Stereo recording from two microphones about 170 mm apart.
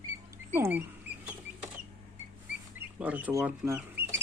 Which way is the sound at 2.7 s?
10° right (ahead or behind).